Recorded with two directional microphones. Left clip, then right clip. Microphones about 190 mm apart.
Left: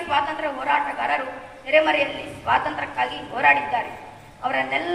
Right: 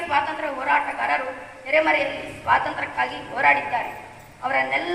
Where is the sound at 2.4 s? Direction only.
15° left (ahead or behind).